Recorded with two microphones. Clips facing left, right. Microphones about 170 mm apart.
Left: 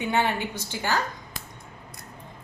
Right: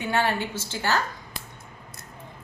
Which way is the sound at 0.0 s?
20° left (ahead or behind).